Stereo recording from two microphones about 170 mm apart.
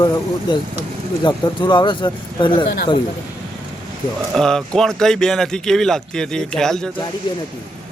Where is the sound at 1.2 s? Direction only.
25° left (ahead or behind).